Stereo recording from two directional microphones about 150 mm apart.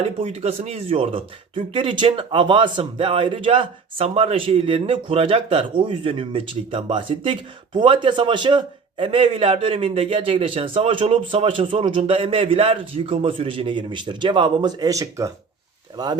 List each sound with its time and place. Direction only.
0.2 s speech: 45° right (ahead or behind); by 15.3 s 20° right (ahead or behind)